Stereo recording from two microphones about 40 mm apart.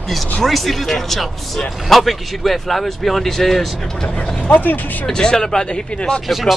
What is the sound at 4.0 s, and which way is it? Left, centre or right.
Speech, centre.